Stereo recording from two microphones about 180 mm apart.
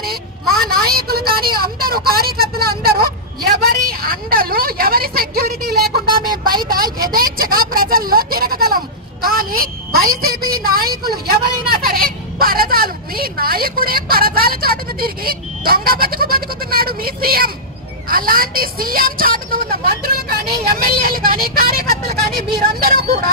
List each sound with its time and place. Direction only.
0.0 s vehicle: 55° right (ahead or behind)
3.5 s a woman's voice: 55° right (ahead or behind)
6.3 s a sound: 55° right (ahead or behind)
7.1 s speech: 50° right (ahead or behind)